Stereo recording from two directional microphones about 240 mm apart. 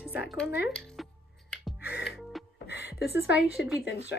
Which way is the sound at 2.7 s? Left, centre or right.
Left.